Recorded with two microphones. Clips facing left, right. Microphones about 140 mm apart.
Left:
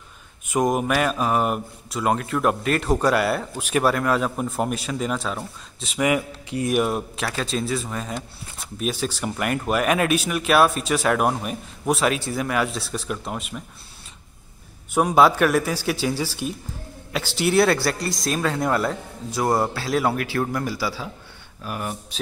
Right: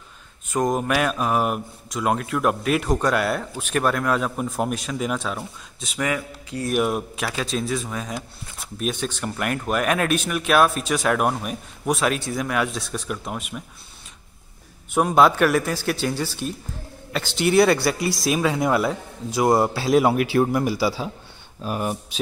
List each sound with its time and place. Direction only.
0.5 s a man's voice: 10° left (ahead or behind)
6.0 s speech: 15° left (ahead or behind)
6.7 s speech: centre (ahead or behind)
15.0 s speech: centre (ahead or behind); by 21.9 s 25° right (ahead or behind)